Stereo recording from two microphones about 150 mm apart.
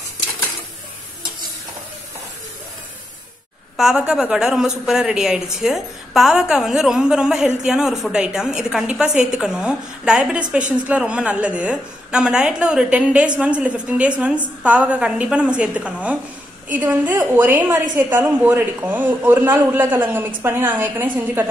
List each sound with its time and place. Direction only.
3.7 s a woman's voice: 5° right (ahead or behind)